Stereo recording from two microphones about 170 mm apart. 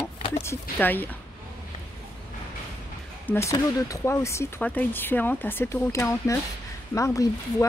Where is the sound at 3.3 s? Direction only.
15° left (ahead or behind).